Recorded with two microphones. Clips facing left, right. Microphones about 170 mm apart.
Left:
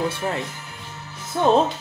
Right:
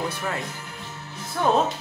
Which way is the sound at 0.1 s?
25° left (ahead or behind).